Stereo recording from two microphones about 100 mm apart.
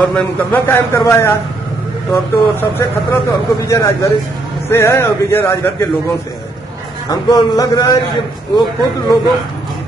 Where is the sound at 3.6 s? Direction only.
35° left (ahead or behind).